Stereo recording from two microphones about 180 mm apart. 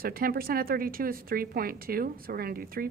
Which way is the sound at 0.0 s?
55° right (ahead or behind).